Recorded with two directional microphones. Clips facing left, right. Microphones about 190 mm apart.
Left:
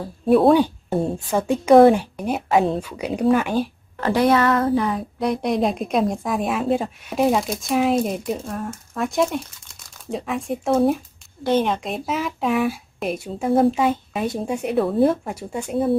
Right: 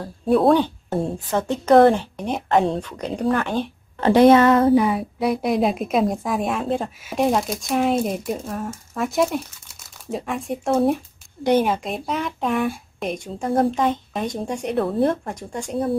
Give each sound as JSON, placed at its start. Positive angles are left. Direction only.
{"t": 0.0, "sound": "a woman's voice", "side_deg": 5}
{"t": 4.0, "sound": "speech", "side_deg": -25}
{"t": 4.8, "sound": "speech", "side_deg": -5}